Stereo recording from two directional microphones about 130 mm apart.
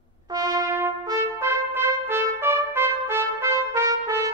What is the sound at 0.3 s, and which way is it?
Trumpet, 30° right (ahead or behind).